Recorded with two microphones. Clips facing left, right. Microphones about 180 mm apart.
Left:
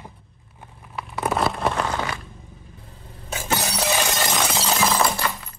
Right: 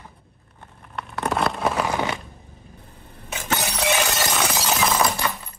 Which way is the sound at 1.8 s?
15° right (ahead or behind).